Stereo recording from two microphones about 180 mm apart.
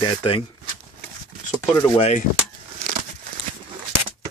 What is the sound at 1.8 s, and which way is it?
Speech, 30° left (ahead or behind).